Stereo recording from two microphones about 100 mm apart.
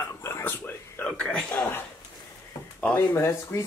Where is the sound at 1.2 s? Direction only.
10° left (ahead or behind).